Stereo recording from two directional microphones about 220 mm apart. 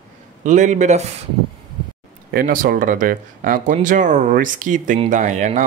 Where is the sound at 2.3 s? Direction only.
40° right (ahead or behind).